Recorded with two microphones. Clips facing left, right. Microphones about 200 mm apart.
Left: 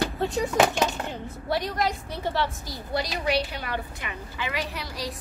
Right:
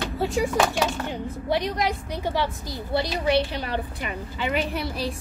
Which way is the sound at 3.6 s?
30° right (ahead or behind).